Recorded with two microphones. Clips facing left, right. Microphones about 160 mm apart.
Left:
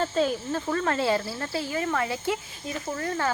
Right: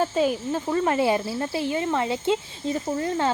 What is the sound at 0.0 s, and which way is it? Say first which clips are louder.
Speech: right 3 dB; 10° right (ahead or behind).